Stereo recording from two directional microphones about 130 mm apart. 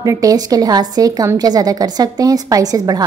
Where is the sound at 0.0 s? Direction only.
25° right (ahead or behind).